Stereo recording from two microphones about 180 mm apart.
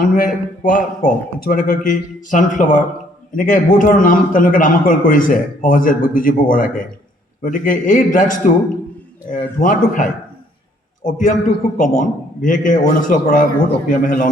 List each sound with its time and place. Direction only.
0.1 s a man's voice: 50° left (ahead or behind)